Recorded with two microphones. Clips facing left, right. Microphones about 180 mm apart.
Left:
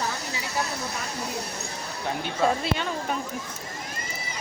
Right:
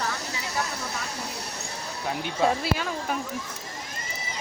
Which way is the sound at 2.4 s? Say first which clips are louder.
Even; 5° right (ahead or behind).